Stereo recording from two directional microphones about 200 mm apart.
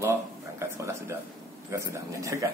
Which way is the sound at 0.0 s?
15° right (ahead or behind).